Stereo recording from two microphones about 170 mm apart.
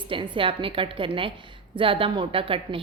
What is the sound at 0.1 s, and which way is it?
A woman's voice, 30° right (ahead or behind).